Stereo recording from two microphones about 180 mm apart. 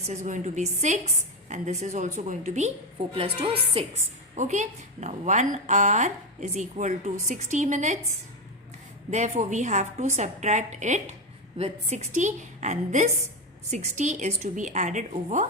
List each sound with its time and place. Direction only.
0.0 s a woman's voice: 40° right (ahead or behind)
9.0 s a woman's voice: 40° right (ahead or behind)